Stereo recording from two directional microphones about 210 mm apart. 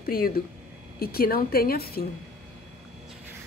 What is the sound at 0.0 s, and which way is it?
A woman's voice, 45° left (ahead or behind).